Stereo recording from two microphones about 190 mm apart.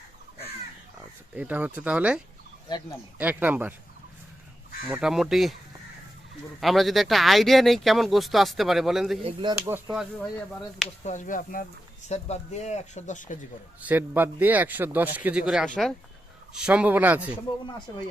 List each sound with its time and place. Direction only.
1.4 s a man's voice: 10° right (ahead or behind)
4.9 s speech: centre (ahead or behind)
6.6 s speech: centre (ahead or behind)
9.2 s a man's voice: 25° right (ahead or behind); by 10.2 s 5° right (ahead or behind)
11.0 s speech: 40° left (ahead or behind)
13.8 s a man's voice: 10° right (ahead or behind)